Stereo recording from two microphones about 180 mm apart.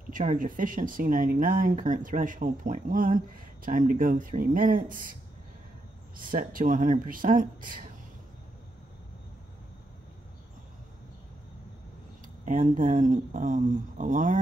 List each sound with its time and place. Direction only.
0.1 s speech: 45° right (ahead or behind)
6.1 s speech: 50° right (ahead or behind)
12.4 s speech: 50° right (ahead or behind)